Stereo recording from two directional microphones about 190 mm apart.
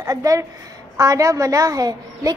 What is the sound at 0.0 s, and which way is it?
A woman's voice, 15° right (ahead or behind).